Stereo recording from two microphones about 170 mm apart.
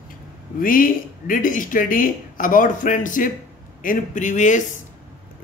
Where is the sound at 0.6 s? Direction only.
55° left (ahead or behind).